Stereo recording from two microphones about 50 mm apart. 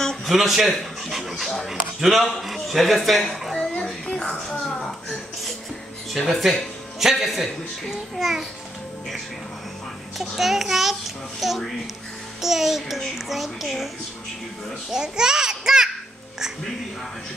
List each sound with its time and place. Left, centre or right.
0.0 s a sound: centre
0.3 s speech: centre
3.8 s a sound: centre
6.1 s speech: centre
10.1 s speech: centre
14.9 s a child's voice: centre